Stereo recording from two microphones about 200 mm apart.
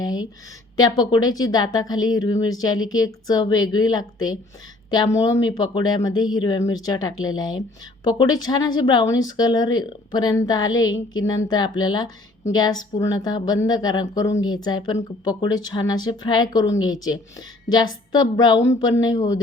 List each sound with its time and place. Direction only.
0.0 s a woman's voice: 20° left (ahead or behind)